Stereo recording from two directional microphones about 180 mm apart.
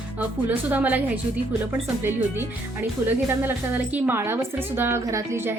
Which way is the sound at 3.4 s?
10° right (ahead or behind).